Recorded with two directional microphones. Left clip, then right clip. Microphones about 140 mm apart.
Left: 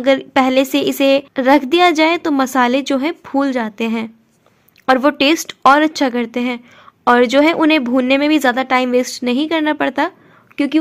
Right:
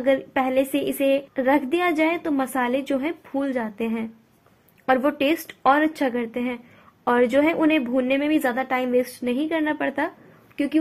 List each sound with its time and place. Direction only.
0.0 s a woman's voice: 30° left (ahead or behind)